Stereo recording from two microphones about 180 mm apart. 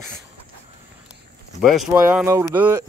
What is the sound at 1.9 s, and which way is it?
Speech, 15° right (ahead or behind).